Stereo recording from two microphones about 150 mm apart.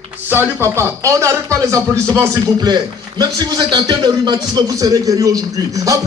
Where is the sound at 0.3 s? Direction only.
15° right (ahead or behind).